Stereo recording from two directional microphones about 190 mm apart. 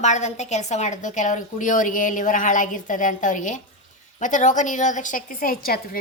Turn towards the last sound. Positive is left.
turn(degrees=50)  # may be behind; listen again after turning